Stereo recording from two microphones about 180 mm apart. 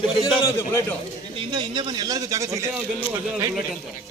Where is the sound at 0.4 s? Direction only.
15° left (ahead or behind).